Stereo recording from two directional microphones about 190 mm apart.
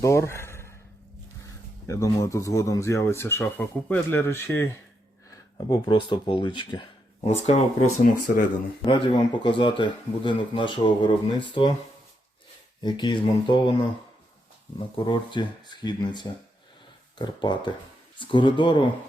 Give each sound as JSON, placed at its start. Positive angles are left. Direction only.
{"t": 0.0, "sound": "a sound", "side_deg": 15}
{"t": 1.9, "sound": "speech", "side_deg": 15}
{"t": 8.8, "sound": "speech", "side_deg": 25}
{"t": 12.8, "sound": "speech", "side_deg": 25}